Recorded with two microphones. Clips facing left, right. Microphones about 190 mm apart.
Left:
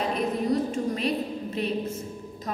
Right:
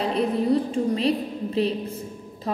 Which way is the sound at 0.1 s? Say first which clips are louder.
Right 7 dB; 30° right (ahead or behind).